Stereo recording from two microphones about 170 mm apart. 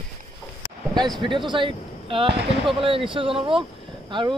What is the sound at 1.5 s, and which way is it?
Speech, 30° right (ahead or behind).